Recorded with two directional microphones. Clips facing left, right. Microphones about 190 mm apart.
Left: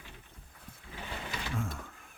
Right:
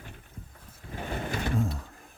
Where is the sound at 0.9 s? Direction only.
50° right (ahead or behind).